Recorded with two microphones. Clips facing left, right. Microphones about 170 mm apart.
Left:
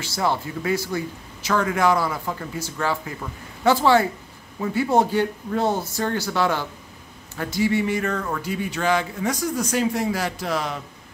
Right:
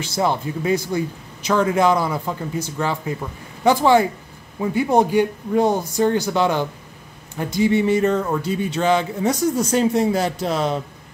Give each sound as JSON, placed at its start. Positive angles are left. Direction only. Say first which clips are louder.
{"t": 0.0, "sound": "speech", "louder": "right 3 dB", "side_deg": -20}